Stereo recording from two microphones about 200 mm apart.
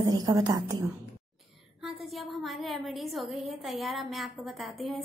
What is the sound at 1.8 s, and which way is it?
A woman's voice, centre (ahead or behind).